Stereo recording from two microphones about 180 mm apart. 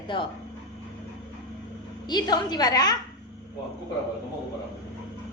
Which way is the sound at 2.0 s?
25° left (ahead or behind).